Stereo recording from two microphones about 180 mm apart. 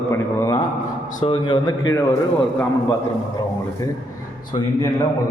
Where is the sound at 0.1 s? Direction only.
15° left (ahead or behind).